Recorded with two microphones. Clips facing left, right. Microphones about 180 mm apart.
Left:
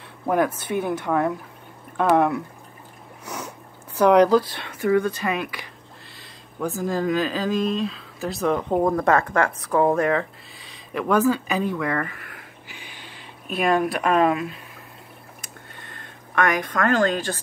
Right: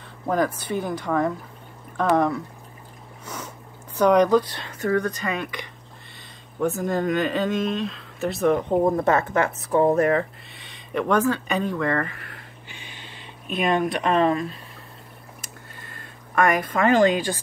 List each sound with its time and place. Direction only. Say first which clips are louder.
0.8 s speech: left 1 dB; 5° left (ahead or behind)
6.6 s speech: right 1 dB; centre (ahead or behind)
8.8 s speech: even; 25° right (ahead or behind)
10.6 s speech: right 2 dB; centre (ahead or behind)
12.6 s a sound: even; 10° left (ahead or behind)
13.5 s speech: left 1 dB; 5° left (ahead or behind)
15.8 s speech: even; 5° right (ahead or behind)